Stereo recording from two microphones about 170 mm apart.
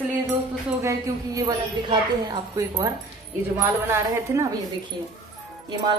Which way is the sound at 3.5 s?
20° right (ahead or behind).